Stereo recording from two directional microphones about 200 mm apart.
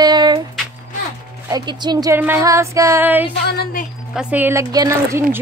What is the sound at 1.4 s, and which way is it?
Speech, 20° right (ahead or behind).